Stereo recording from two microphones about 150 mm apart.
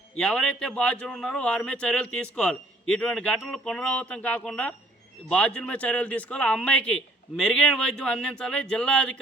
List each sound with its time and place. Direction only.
0.2 s a man's voice: 5° left (ahead or behind)